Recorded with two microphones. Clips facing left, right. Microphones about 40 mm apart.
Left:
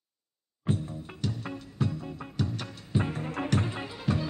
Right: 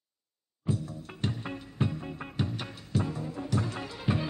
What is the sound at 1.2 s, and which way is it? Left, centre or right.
Music, right.